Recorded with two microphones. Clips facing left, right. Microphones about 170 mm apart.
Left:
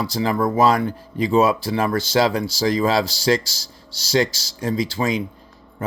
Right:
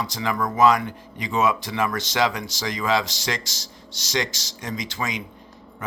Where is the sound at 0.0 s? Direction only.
35° left (ahead or behind).